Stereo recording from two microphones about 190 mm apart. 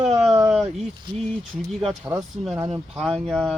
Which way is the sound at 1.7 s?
Centre (ahead or behind).